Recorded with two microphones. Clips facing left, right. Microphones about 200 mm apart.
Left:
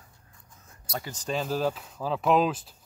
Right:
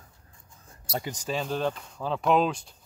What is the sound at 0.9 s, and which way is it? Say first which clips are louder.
Speech: right 3 dB; 25° right (ahead or behind).